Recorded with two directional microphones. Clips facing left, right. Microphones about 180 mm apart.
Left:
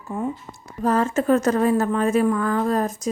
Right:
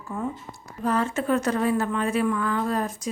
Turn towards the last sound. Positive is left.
turn(degrees=45)  # may be behind; listen again after turning